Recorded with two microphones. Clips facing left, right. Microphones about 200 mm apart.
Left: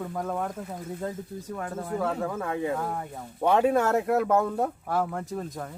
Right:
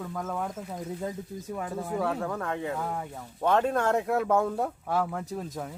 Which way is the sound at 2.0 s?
5° left (ahead or behind).